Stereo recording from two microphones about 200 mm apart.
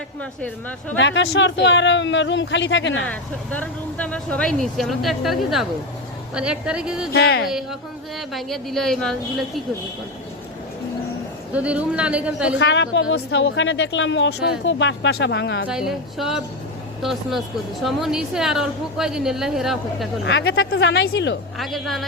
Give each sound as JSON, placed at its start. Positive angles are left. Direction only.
{"t": 0.2, "sound": "speech", "side_deg": 5}
{"t": 0.9, "sound": "speech", "side_deg": 65}
{"t": 3.1, "sound": "speech", "side_deg": 5}
{"t": 7.1, "sound": "speech", "side_deg": 55}
{"t": 7.4, "sound": "speech", "side_deg": 0}
{"t": 11.5, "sound": "speech", "side_deg": -5}
{"t": 12.5, "sound": "a woman's voice", "side_deg": 65}
{"t": 15.6, "sound": "speech", "side_deg": -5}
{"t": 20.2, "sound": "speech", "side_deg": 65}
{"t": 20.7, "sound": "speech", "side_deg": 55}
{"t": 21.6, "sound": "speech", "side_deg": 0}